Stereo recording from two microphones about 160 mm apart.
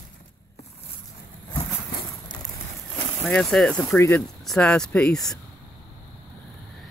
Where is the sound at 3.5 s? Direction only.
5° left (ahead or behind).